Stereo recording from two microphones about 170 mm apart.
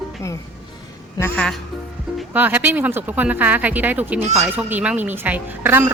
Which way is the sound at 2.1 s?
10° right (ahead or behind).